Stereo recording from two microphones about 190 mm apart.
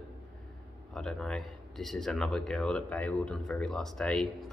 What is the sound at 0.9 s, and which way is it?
Speech, 5° left (ahead or behind).